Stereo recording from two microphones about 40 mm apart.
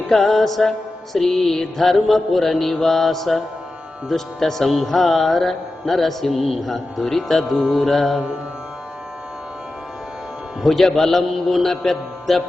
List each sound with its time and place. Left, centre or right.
0.1 s a man's voice: centre
6.7 s a man's voice: centre
7.5 s mantra: centre
7.9 s a man's voice: centre
10.6 s a man's voice: centre